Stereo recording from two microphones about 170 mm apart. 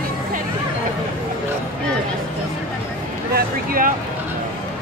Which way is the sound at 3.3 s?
55° right (ahead or behind).